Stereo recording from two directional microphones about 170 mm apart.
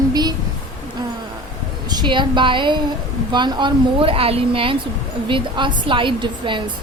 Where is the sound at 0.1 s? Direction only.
25° right (ahead or behind).